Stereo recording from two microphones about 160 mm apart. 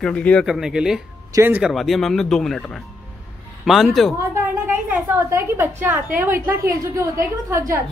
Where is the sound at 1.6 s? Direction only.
Centre (ahead or behind).